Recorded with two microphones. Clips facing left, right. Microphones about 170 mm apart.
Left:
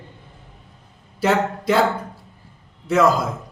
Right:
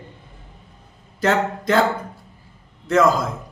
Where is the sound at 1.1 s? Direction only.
10° left (ahead or behind).